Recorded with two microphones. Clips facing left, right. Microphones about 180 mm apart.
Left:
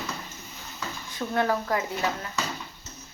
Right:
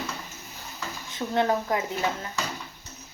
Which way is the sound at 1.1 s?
20° right (ahead or behind).